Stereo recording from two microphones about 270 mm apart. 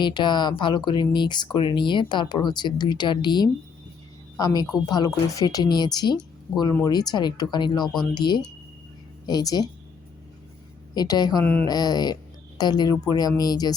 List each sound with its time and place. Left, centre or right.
0.0 s a woman's voice: centre
10.9 s speech: centre